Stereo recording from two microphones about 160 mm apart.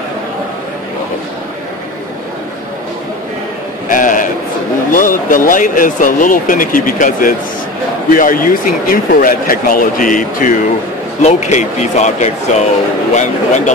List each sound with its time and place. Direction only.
3.9 s a sound: 55° left (ahead or behind)
4.9 s speech: 55° left (ahead or behind)
11.2 s speech: 45° left (ahead or behind)